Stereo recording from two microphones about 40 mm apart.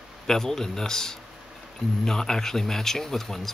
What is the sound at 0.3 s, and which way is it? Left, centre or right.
Speech, centre.